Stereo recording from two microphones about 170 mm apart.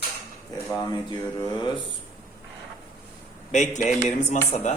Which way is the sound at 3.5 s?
45° left (ahead or behind).